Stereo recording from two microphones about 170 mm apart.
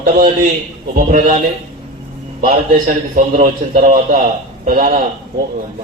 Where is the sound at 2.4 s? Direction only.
55° right (ahead or behind).